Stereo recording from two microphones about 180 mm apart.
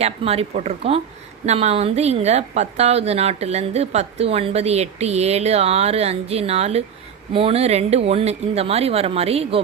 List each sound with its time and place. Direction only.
0.0 s a woman's voice: 35° right (ahead or behind)